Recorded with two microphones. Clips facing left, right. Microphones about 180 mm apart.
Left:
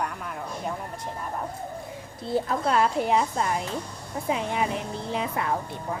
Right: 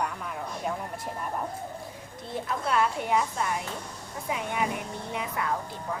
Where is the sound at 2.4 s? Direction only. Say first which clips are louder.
Left 1 dB; 30° left (ahead or behind).